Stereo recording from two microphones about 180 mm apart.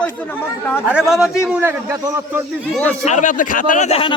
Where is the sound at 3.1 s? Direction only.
45° left (ahead or behind).